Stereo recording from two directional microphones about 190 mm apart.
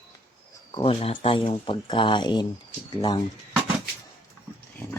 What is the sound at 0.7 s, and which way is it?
Speech, 25° left (ahead or behind).